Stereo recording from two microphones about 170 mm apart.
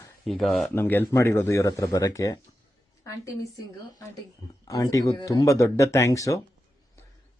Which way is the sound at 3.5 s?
20° left (ahead or behind).